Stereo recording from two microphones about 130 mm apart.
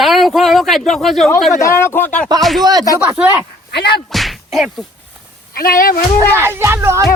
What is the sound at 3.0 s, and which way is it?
Speech, 10° right (ahead or behind).